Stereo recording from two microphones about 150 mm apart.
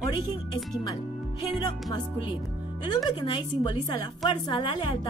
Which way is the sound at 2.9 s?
30° left (ahead or behind).